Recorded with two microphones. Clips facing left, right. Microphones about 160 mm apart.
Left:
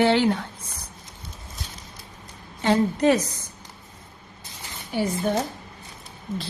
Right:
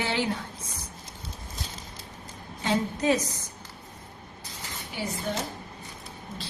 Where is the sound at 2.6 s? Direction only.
65° left (ahead or behind).